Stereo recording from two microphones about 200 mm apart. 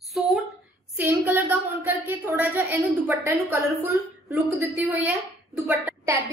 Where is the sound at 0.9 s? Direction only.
10° right (ahead or behind).